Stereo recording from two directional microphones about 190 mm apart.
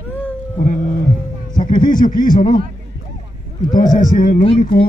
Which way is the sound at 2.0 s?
45° left (ahead or behind).